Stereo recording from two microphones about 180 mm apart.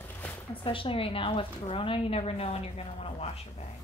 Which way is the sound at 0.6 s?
30° left (ahead or behind).